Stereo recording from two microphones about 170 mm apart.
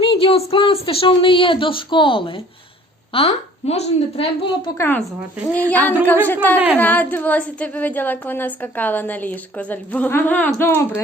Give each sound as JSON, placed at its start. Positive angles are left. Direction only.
{"t": 0.0, "sound": "speech", "side_deg": 30}
{"t": 4.8, "sound": "a woman's voice", "side_deg": 10}